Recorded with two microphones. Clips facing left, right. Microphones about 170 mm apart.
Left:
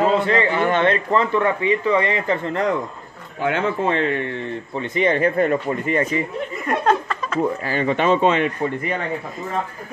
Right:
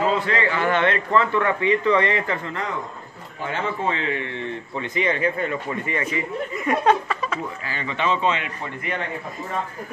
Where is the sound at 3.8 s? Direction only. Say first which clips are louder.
Left 5 dB; 50° left (ahead or behind).